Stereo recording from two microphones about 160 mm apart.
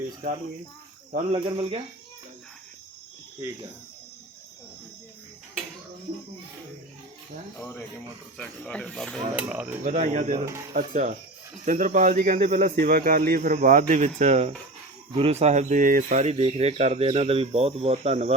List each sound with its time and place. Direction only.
1.3 s speech: 35° right (ahead or behind)
7.6 s speech: 10° left (ahead or behind)
9.3 s speech: 5° right (ahead or behind)
9.8 s speech: 50° right (ahead or behind)
10.4 s speech: 20° right (ahead or behind)
10.8 s speech: 55° right (ahead or behind)
12.5 s speech: 75° right (ahead or behind); by 18.3 s 40° right (ahead or behind)